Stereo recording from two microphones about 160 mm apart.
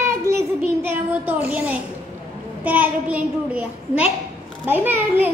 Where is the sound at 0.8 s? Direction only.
10° right (ahead or behind).